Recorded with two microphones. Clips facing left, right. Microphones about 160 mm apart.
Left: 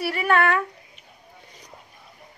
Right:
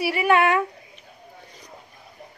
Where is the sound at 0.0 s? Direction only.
10° right (ahead or behind).